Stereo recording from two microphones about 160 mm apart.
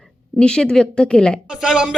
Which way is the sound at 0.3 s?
5° left (ahead or behind).